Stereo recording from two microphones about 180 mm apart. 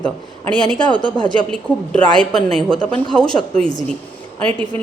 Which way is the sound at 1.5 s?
5° left (ahead or behind).